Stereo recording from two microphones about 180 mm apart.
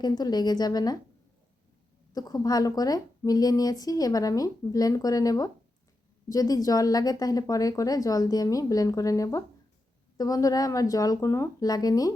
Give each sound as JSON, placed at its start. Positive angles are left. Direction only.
{"t": 0.0, "sound": "a woman's voice", "side_deg": 20}
{"t": 2.1, "sound": "a woman's voice", "side_deg": 20}